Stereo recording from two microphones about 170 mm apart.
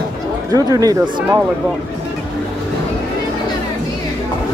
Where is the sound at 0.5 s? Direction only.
20° right (ahead or behind).